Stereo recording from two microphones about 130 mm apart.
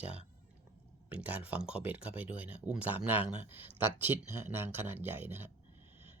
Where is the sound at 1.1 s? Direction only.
10° right (ahead or behind).